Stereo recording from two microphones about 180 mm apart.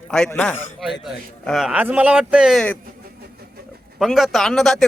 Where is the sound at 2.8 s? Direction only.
60° right (ahead or behind).